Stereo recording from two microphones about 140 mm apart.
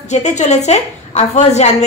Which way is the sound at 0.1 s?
55° left (ahead or behind).